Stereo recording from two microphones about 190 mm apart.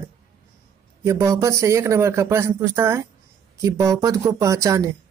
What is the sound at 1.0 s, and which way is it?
Speech, 15° right (ahead or behind).